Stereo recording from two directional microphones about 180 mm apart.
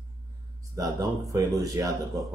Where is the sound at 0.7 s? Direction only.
20° right (ahead or behind).